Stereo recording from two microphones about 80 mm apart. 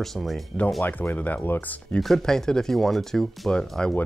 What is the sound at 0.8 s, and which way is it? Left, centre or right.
Speech, left.